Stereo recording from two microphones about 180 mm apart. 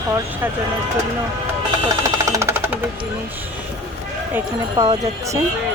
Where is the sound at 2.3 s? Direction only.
15° right (ahead or behind).